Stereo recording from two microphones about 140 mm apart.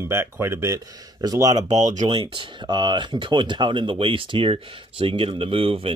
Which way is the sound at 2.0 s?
40° right (ahead or behind).